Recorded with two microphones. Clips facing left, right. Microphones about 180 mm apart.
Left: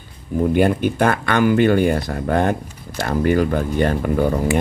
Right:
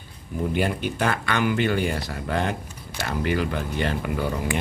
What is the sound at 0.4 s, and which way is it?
Speech, 50° left (ahead or behind).